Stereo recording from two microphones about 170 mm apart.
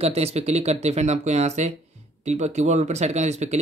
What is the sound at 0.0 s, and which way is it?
Speech, 35° right (ahead or behind).